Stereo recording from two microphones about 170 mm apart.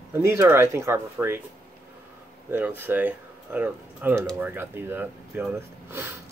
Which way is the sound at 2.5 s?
10° right (ahead or behind).